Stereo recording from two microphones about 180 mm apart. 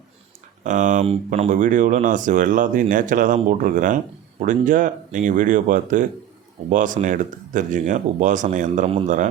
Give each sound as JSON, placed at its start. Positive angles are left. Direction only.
{"t": 0.6, "sound": "speech", "side_deg": -45}